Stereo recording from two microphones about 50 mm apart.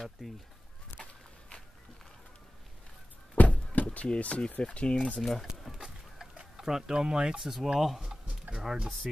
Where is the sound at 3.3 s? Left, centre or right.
Left.